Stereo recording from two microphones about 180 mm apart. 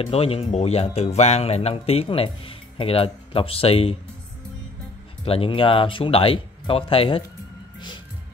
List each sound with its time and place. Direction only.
0.0 s speech: 30° left (ahead or behind)
5.2 s speech: 30° left (ahead or behind)